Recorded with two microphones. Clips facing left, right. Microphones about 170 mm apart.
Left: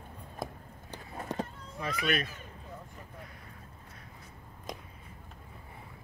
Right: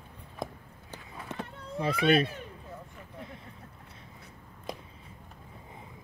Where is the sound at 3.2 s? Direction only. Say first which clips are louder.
Right 9 dB; 25° right (ahead or behind).